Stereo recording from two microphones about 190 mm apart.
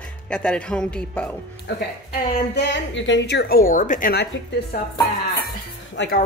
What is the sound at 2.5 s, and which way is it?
A woman's voice, 65° left (ahead or behind).